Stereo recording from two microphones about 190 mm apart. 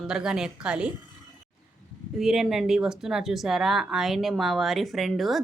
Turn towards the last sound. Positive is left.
turn(degrees=0)  # may be behind; listen again after turning